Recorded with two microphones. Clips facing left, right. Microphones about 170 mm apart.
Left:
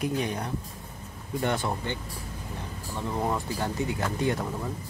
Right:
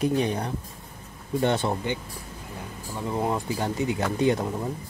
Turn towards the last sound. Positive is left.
turn(degrees=-20)  # may be behind; listen again after turning